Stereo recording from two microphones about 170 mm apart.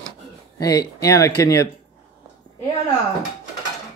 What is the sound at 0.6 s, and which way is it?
Speech, 20° left (ahead or behind).